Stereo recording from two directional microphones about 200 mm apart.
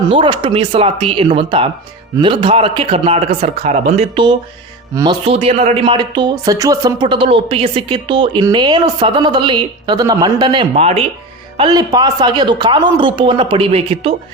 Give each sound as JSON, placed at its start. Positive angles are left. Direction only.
{"t": 0.1, "sound": "speech", "side_deg": -25}